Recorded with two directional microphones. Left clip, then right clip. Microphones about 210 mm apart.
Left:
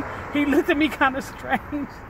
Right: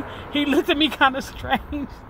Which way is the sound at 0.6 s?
Centre (ahead or behind).